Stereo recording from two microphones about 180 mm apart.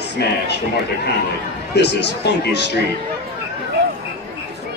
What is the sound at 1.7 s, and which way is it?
Speech, 70° left (ahead or behind).